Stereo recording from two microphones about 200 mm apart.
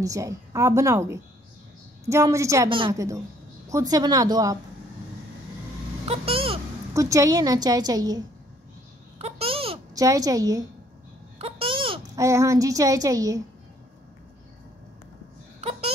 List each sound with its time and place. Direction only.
0.0 s a woman's voice: 15° right (ahead or behind)
6.0 s vehicle: 30° right (ahead or behind)
6.9 s a woman's voice: 15° right (ahead or behind)
9.2 s babbling: 30° right (ahead or behind)
9.9 s a woman's voice: 15° right (ahead or behind)
11.3 s babbling: 30° right (ahead or behind)
12.2 s a woman's voice: 15° right (ahead or behind)
15.6 s a sound: 30° right (ahead or behind)